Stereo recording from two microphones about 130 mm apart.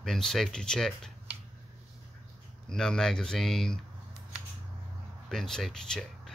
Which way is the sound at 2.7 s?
5° left (ahead or behind).